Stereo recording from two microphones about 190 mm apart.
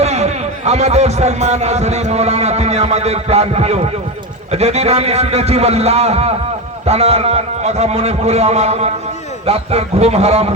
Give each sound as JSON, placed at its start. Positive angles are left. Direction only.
{"t": 0.0, "sound": "a man's voice", "side_deg": -35}